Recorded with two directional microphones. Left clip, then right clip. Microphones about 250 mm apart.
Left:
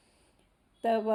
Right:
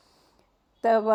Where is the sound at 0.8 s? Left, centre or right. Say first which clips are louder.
Right 7 dB; right.